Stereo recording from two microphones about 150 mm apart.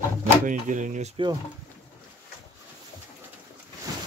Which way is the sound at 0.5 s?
60° right (ahead or behind).